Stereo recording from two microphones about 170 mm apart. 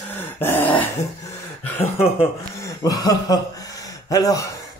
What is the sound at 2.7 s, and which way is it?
Speech, 20° left (ahead or behind).